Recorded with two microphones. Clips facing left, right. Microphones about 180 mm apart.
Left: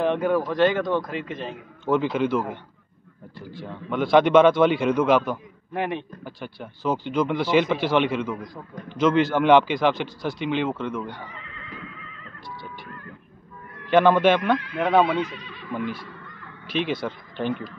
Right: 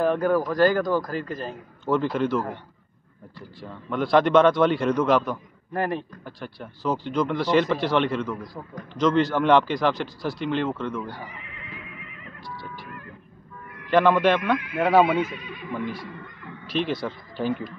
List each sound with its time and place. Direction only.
0.0 s a man's voice: centre (ahead or behind)
11.3 s horse: 20° right (ahead or behind)
12.4 s neigh: centre (ahead or behind)
13.8 s a man's voice: centre (ahead or behind)